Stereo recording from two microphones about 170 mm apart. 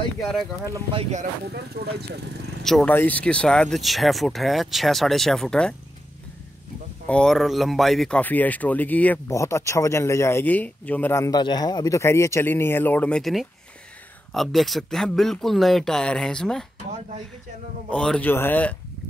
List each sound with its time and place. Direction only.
0.2 s speech: centre (ahead or behind)
1.4 s speech: 70° right (ahead or behind)
2.6 s speech: 5° left (ahead or behind)
7.1 s speech: 5° left (ahead or behind)
17.9 s speech: 5° left (ahead or behind)